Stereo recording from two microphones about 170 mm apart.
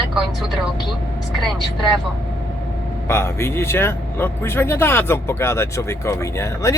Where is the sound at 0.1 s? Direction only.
Centre (ahead or behind).